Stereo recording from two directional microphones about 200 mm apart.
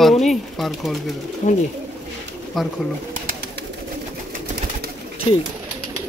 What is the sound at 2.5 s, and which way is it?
Speech, centre (ahead or behind).